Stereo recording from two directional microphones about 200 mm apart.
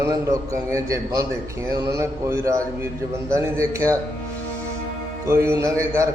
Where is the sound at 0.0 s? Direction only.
15° right (ahead or behind).